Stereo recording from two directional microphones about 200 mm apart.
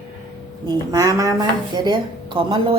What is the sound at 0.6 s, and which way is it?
A woman's voice, 20° right (ahead or behind).